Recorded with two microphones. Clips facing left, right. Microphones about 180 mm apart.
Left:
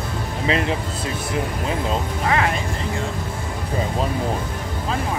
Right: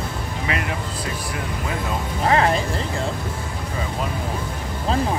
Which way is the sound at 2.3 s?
35° right (ahead or behind).